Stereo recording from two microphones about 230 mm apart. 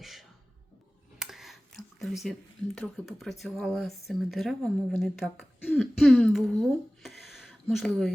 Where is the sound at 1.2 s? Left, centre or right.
Centre.